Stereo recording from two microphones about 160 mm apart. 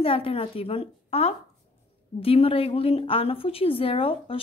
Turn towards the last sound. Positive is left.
turn(degrees=35)  # may be behind; listen again after turning